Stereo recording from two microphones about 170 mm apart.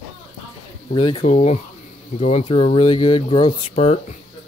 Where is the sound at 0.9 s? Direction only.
30° left (ahead or behind).